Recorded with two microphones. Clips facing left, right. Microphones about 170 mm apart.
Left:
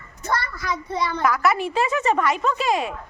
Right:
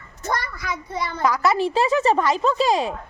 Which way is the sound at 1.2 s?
30° right (ahead or behind).